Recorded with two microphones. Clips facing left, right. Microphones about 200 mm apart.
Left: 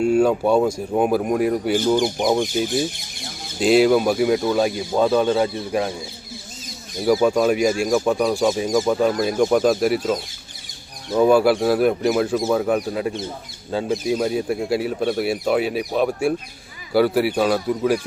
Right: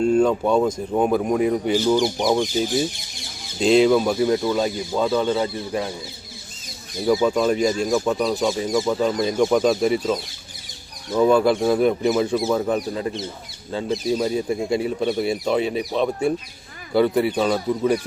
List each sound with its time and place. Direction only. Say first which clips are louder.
0.0 s a man's voice: left 1 dB; 10° left (ahead or behind)
7.0 s a man's voice: left 2 dB; 10° left (ahead or behind)
11.2 s a man's voice: left 1 dB; 10° left (ahead or behind)